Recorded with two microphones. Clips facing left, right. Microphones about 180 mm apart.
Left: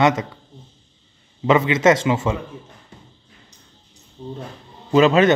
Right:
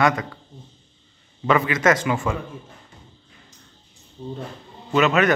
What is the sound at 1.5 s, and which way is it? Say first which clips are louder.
Speech: left 4 dB; 25° left (ahead or behind).